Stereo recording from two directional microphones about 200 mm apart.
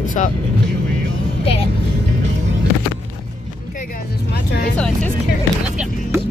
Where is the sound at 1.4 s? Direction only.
30° left (ahead or behind).